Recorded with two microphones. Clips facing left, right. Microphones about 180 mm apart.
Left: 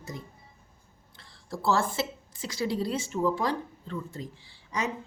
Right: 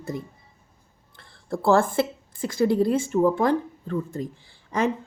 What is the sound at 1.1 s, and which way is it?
A woman's voice, 55° right (ahead or behind).